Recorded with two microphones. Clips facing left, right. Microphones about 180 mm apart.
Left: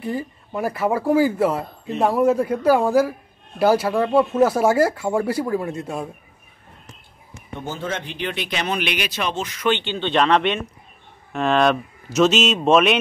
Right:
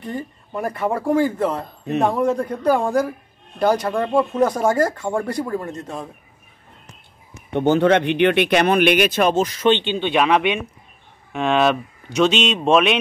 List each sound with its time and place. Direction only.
0.0 s a man's voice: 10° left (ahead or behind)
7.5 s speech: 70° right (ahead or behind); by 9.6 s 40° right (ahead or behind)
9.6 s speech: 20° right (ahead or behind); by 13.0 s centre (ahead or behind)